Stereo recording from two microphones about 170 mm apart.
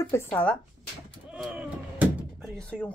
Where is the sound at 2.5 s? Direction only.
5° left (ahead or behind).